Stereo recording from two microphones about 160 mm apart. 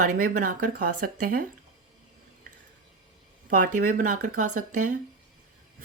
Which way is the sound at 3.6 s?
60° right (ahead or behind).